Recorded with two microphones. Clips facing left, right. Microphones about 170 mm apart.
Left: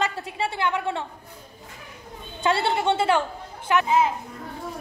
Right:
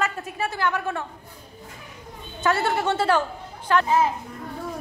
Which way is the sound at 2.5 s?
25° left (ahead or behind).